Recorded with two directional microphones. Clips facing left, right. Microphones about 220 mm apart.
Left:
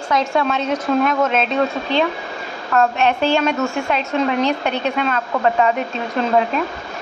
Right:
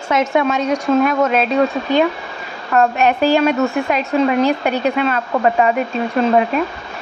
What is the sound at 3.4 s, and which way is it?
A woman's voice, 10° right (ahead or behind).